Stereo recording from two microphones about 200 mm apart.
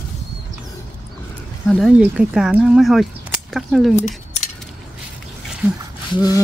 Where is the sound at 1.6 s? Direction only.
Centre (ahead or behind).